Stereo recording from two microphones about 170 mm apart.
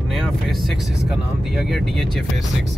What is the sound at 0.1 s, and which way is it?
Vehicle, centre (ahead or behind).